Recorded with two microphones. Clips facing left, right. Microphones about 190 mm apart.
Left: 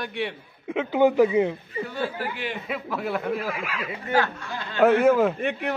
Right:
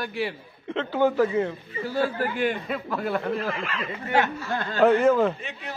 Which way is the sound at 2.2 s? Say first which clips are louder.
Right 6 dB; 45° right (ahead or behind).